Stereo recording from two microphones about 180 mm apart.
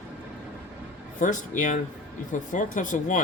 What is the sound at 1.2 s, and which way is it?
Speech, 45° left (ahead or behind).